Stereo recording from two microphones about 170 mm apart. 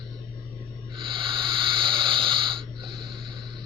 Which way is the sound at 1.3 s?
30° right (ahead or behind).